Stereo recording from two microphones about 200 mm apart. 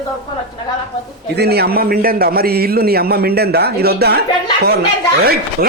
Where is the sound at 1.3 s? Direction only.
55° right (ahead or behind).